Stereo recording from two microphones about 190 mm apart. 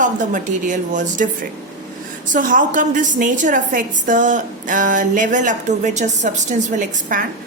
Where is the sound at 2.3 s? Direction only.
45° right (ahead or behind).